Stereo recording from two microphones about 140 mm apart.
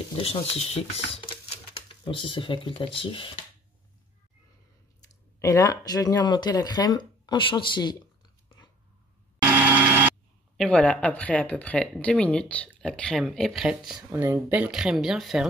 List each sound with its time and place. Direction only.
0.1 s speech: 45° left (ahead or behind)
5.4 s speech: 25° left (ahead or behind)
9.4 s a sound: 10° right (ahead or behind)
10.6 s speech: 5° left (ahead or behind)
14.1 s speech: 15° right (ahead or behind)